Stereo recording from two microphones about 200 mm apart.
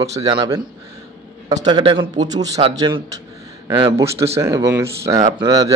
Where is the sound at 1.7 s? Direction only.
20° right (ahead or behind).